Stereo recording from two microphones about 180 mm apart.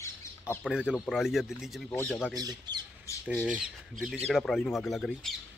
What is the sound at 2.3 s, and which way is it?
Speech, 20° right (ahead or behind).